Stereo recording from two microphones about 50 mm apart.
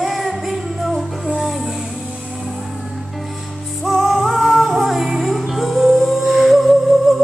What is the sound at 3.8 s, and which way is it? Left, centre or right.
Music, centre.